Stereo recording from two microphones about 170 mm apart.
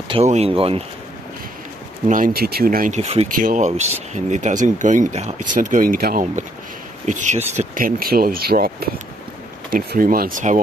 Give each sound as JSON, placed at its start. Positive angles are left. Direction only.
{"t": 0.1, "sound": "speech", "side_deg": -40}
{"t": 2.0, "sound": "speech", "side_deg": -50}
{"t": 3.0, "sound": "speech", "side_deg": -40}
{"t": 3.3, "sound": "speech", "side_deg": -50}
{"t": 7.1, "sound": "speech", "side_deg": -45}